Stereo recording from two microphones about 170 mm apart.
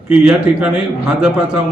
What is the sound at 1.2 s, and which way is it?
Speech, 5° right (ahead or behind).